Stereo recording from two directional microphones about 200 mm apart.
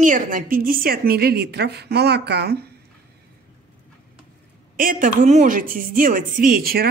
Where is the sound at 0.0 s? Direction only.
40° right (ahead or behind).